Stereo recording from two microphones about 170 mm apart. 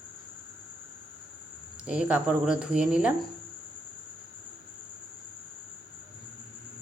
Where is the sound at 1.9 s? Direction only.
5° right (ahead or behind).